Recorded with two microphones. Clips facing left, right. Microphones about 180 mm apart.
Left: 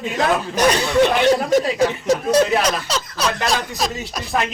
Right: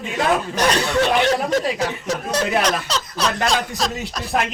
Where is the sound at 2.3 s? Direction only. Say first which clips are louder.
Left 2 dB; 5° left (ahead or behind).